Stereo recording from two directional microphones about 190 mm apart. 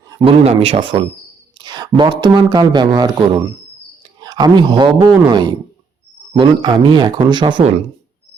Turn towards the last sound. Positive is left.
turn(degrees=-30)  # may be behind; listen again after turning